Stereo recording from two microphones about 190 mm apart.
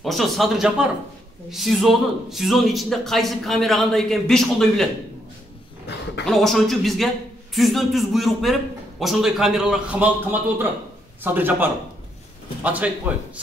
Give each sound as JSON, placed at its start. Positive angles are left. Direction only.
{"t": 0.0, "sound": "a man's voice", "side_deg": 0}
{"t": 5.9, "sound": "a sound", "side_deg": 65}
{"t": 6.2, "sound": "a man's voice", "side_deg": 0}